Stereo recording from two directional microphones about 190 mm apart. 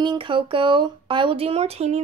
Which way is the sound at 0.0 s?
25° right (ahead or behind).